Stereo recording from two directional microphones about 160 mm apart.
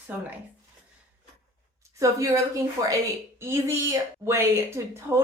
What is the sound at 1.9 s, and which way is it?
A woman's voice, 20° right (ahead or behind).